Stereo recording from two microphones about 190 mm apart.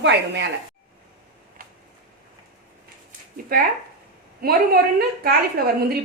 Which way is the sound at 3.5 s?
50° right (ahead or behind).